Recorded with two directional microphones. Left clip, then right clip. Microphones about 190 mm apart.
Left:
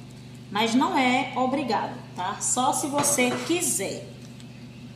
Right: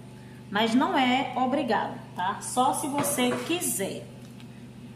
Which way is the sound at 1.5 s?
15° right (ahead or behind).